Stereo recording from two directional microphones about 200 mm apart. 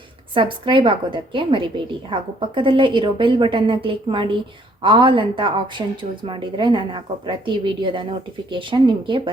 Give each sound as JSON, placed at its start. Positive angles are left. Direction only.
{"t": 0.3, "sound": "a woman's voice", "side_deg": -25}